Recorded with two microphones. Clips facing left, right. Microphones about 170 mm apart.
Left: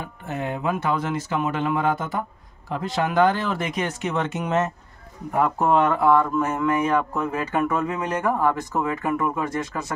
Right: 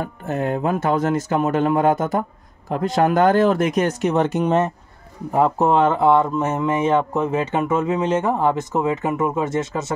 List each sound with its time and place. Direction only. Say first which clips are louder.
0.0 s speech: right 6 dB; 45° right (ahead or behind); by 9.9 s 25° right (ahead or behind)